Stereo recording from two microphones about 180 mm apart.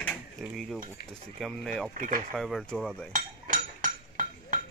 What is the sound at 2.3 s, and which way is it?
Cutlery, centre (ahead or behind).